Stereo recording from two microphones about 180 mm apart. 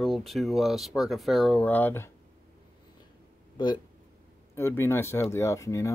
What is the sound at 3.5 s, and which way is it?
Speech, 25° left (ahead or behind).